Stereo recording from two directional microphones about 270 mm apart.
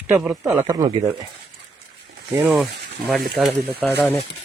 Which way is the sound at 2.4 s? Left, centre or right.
Centre.